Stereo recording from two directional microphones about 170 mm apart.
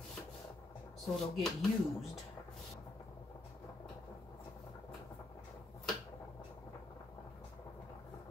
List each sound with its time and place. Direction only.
1.0 s speech: centre (ahead or behind)